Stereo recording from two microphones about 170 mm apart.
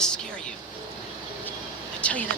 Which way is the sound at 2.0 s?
5° left (ahead or behind).